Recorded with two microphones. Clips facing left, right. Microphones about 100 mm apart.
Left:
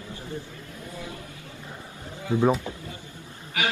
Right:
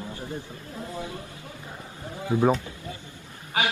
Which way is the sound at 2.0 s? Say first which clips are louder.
Right 1 dB; 25° right (ahead or behind).